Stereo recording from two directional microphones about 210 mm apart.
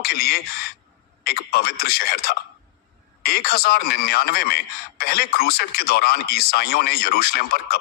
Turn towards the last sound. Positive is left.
turn(degrees=45)  # may be behind; listen again after turning